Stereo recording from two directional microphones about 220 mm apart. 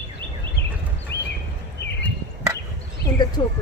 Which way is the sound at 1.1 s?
50° left (ahead or behind).